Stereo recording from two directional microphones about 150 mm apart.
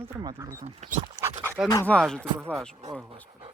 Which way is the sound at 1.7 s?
10° left (ahead or behind).